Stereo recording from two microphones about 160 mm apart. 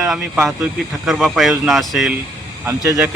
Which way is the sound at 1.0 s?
Centre (ahead or behind).